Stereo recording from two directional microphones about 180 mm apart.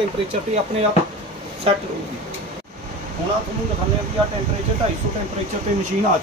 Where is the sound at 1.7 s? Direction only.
35° right (ahead or behind).